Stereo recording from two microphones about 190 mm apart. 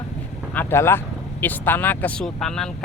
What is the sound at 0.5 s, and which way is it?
Speech, 10° left (ahead or behind).